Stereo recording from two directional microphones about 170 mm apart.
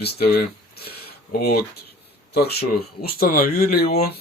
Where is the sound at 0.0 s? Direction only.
65° left (ahead or behind).